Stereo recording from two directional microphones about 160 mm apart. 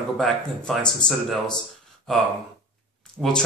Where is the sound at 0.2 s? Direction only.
5° left (ahead or behind).